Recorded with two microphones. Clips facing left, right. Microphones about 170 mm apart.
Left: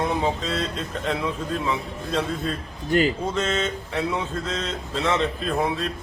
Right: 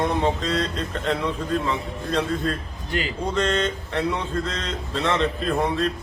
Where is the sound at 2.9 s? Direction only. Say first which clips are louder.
Left 7 dB; 45° left (ahead or behind).